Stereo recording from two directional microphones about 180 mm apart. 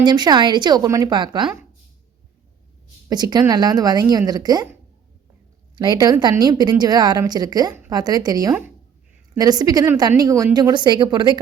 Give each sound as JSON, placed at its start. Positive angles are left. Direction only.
{"t": 0.0, "sound": "speech", "side_deg": -25}
{"t": 3.1, "sound": "speech", "side_deg": -20}